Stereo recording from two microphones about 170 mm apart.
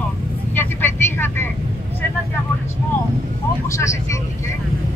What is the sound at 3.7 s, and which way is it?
Speech, 15° left (ahead or behind).